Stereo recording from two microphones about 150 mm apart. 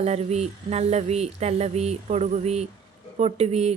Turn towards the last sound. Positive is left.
turn(degrees=-45)  # may be behind; listen again after turning